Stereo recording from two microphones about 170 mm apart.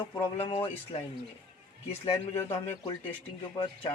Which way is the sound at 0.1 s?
30° left (ahead or behind).